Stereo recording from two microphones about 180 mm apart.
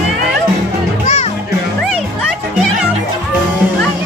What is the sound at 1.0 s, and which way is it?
Music, 40° left (ahead or behind).